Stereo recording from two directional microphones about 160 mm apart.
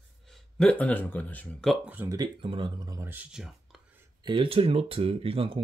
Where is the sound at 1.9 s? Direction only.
15° right (ahead or behind).